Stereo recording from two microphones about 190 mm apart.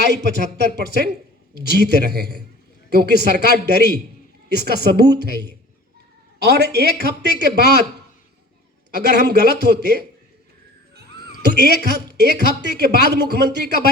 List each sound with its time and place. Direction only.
0.0 s a woman's voice: 60° right (ahead or behind)
6.4 s a woman's voice: 60° right (ahead or behind)
9.0 s a woman's voice: 60° right (ahead or behind)
11.4 s a woman's voice: 60° right (ahead or behind)